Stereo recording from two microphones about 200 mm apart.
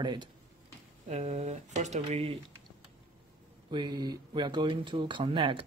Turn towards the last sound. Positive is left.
turn(degrees=-25)  # may be behind; listen again after turning